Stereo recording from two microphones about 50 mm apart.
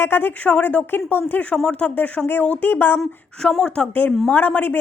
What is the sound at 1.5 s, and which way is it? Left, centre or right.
Speech, left.